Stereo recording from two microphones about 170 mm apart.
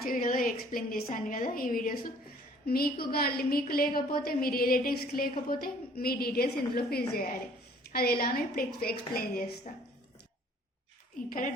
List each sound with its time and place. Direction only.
0.0 s a woman's voice: 55° left (ahead or behind)
11.3 s a woman's voice: 50° left (ahead or behind)